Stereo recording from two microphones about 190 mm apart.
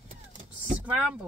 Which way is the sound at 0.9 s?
5° right (ahead or behind).